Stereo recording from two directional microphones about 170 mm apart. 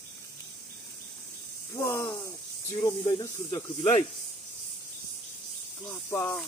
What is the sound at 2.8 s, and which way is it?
Speech, 25° left (ahead or behind).